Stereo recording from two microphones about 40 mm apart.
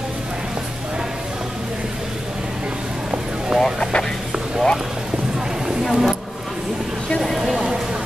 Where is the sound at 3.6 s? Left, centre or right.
Centre.